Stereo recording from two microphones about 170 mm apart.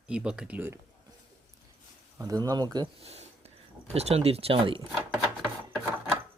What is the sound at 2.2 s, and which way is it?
Speech, 20° right (ahead or behind).